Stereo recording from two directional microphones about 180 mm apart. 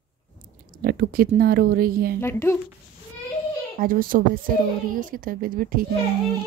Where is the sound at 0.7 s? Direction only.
60° right (ahead or behind).